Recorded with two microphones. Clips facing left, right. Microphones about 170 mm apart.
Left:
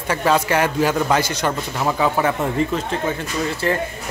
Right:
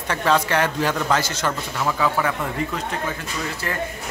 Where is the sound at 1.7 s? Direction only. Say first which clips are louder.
Left 3 dB; 25° left (ahead or behind).